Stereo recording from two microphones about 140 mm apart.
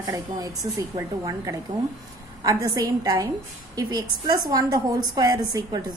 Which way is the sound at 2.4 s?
25° right (ahead or behind).